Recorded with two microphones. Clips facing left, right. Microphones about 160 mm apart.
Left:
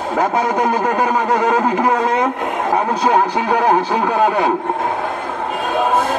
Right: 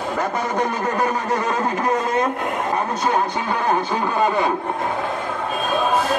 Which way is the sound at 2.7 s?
75° left (ahead or behind).